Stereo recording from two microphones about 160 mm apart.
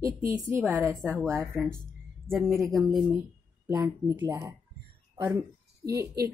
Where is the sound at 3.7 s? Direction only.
20° right (ahead or behind).